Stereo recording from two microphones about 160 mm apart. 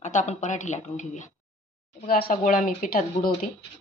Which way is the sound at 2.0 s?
65° left (ahead or behind).